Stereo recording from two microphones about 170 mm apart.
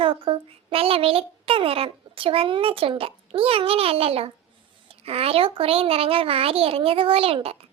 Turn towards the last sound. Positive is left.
turn(degrees=-35)  # may be behind; listen again after turning